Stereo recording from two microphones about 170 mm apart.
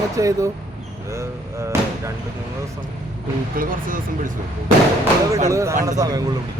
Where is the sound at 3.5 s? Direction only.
55° right (ahead or behind).